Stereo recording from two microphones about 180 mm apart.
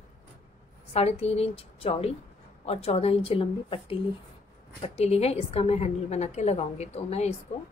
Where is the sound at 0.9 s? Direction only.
35° left (ahead or behind).